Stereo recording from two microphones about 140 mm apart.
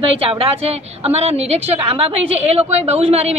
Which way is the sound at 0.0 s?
40° right (ahead or behind).